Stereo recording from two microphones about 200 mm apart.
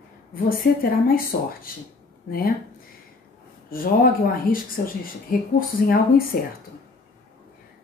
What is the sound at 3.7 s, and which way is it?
Speech, 45° left (ahead or behind).